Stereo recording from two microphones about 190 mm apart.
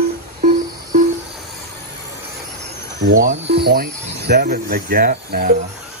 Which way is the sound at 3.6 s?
60° right (ahead or behind).